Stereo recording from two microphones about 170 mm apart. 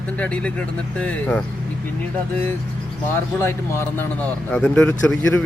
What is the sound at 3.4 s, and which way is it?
Speech, 15° left (ahead or behind).